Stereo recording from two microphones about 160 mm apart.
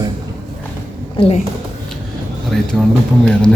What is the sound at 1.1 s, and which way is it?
Speech, 35° left (ahead or behind).